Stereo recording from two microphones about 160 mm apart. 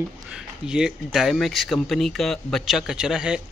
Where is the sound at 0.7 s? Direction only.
5° right (ahead or behind).